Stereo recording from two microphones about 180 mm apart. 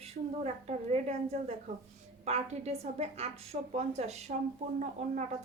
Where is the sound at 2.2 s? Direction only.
35° right (ahead or behind).